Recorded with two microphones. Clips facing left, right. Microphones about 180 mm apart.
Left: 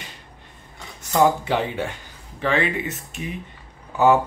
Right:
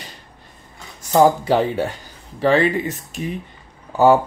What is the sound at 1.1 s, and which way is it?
Speech, 35° right (ahead or behind).